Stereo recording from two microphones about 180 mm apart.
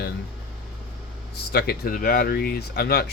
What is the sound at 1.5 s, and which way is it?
Speech, 60° left (ahead or behind).